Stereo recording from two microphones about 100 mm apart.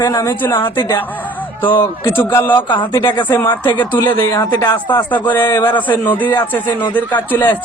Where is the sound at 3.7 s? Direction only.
15° left (ahead or behind).